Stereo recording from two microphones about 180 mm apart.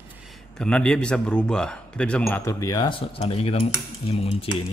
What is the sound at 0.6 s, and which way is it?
A man's voice, 5° left (ahead or behind).